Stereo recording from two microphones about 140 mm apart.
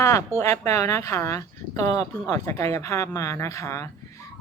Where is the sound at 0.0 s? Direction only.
20° left (ahead or behind).